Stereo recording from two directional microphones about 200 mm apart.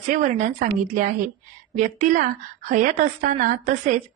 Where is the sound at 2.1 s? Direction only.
40° right (ahead or behind).